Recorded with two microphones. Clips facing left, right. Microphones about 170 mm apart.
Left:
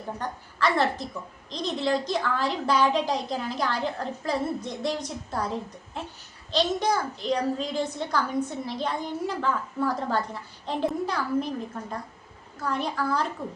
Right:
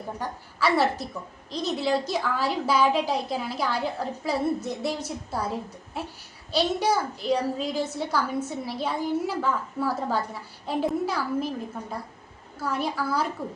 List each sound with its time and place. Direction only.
0.2 s a woman's voice: 5° right (ahead or behind)